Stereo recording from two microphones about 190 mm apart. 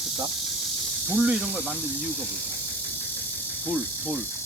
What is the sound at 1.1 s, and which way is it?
Speech, 5° right (ahead or behind).